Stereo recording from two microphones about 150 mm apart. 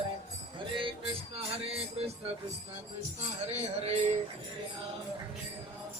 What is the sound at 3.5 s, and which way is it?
Music, 45° right (ahead or behind).